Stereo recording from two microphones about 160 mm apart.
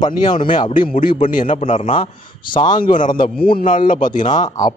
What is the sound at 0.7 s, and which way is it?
A man's voice, 60° left (ahead or behind).